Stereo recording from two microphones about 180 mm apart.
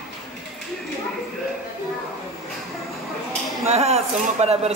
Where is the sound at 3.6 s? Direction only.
35° right (ahead or behind).